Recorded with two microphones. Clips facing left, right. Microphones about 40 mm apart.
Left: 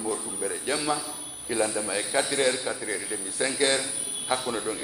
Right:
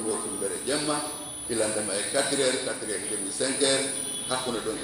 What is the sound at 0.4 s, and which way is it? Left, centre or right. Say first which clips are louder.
A man's voice: even; left.